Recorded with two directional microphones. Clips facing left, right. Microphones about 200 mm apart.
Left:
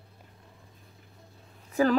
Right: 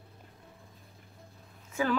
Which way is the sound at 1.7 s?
40° left (ahead or behind).